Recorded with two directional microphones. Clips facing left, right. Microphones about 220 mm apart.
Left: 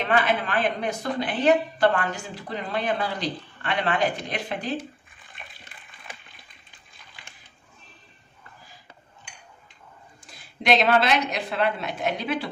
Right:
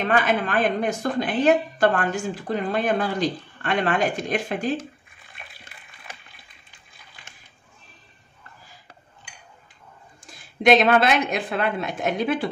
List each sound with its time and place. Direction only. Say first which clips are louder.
0.0 s a woman's voice: right 2 dB; 45° right (ahead or behind)
10.3 s a woman's voice: right 6 dB; 50° right (ahead or behind)